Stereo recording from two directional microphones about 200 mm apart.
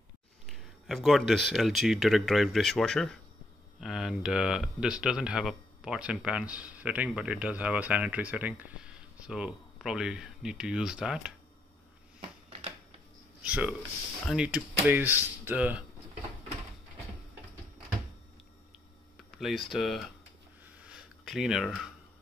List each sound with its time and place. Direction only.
0.5 s speech: centre (ahead or behind)
12.4 s typewriter: 30° right (ahead or behind)
13.4 s speech: 5° right (ahead or behind)
19.3 s speech: centre (ahead or behind)
20.6 s a sound: 5° right (ahead or behind)